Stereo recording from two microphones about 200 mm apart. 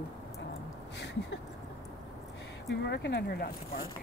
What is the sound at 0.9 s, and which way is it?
Speech, 60° left (ahead or behind).